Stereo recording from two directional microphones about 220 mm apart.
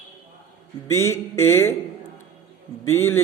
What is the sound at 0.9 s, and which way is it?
Speech, 10° left (ahead or behind).